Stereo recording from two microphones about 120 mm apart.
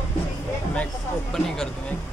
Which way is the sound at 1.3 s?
5° left (ahead or behind).